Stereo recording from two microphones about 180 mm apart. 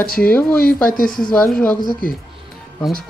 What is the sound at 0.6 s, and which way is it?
Speech, 55° left (ahead or behind).